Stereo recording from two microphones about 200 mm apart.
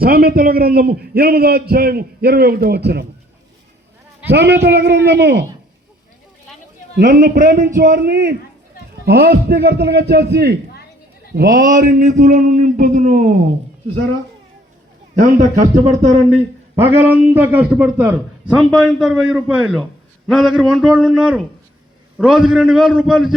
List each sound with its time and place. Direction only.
0.0 s a man's voice: 50° right (ahead or behind)
4.3 s a man's voice: 55° right (ahead or behind)
6.9 s a man's voice: 45° right (ahead or behind)
15.2 s a man's voice: 35° right (ahead or behind)
16.8 s a man's voice: 10° right (ahead or behind)